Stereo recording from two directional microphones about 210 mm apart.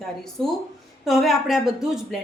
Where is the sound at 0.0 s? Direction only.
Centre (ahead or behind).